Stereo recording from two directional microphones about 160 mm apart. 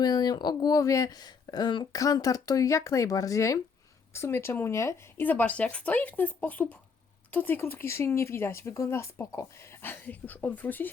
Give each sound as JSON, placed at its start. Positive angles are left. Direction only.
{"t": 0.0, "sound": "speech", "side_deg": 25}